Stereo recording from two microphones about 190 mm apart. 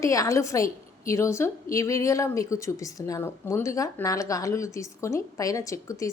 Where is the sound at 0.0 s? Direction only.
15° left (ahead or behind).